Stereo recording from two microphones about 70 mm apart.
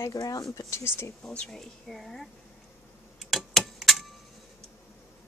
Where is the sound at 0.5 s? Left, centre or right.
Left.